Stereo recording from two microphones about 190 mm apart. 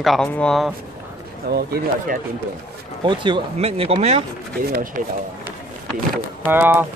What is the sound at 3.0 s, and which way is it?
Speech, 25° right (ahead or behind).